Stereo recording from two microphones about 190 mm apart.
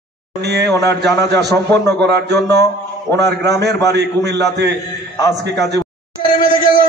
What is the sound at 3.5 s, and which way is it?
Music, 60° right (ahead or behind).